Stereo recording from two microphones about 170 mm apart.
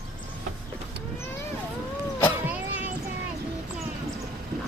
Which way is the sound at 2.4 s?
10° right (ahead or behind).